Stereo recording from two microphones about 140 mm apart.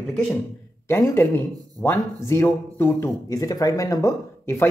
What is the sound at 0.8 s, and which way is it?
Speech, 20° left (ahead or behind).